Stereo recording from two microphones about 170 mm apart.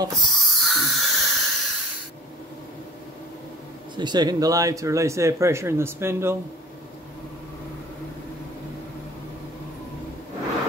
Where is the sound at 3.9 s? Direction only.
25° right (ahead or behind).